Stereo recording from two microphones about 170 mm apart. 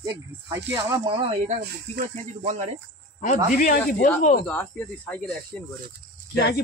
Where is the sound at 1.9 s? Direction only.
45° right (ahead or behind).